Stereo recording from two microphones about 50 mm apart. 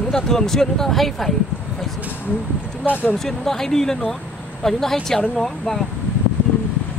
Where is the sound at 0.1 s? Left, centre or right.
Centre.